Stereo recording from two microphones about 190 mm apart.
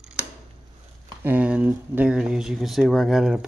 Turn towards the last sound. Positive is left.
turn(degrees=0)  # may be behind; listen again after turning